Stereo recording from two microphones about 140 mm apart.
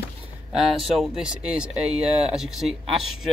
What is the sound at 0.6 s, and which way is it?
Speech, 5° right (ahead or behind).